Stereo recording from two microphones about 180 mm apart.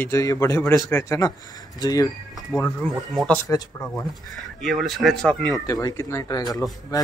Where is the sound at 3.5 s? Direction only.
20° left (ahead or behind).